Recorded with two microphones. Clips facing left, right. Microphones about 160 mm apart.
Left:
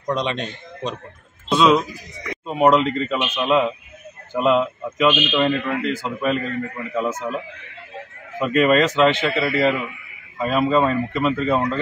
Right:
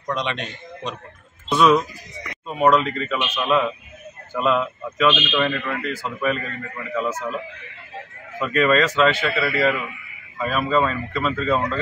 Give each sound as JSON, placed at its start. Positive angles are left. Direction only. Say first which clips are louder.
{"t": 0.1, "sound": "a man's voice", "louder": "left 3 dB", "side_deg": 30}
{"t": 1.5, "sound": "a man's voice", "louder": "left 1 dB", "side_deg": 20}
{"t": 8.4, "sound": "a man's voice", "louder": "left 2 dB", "side_deg": 20}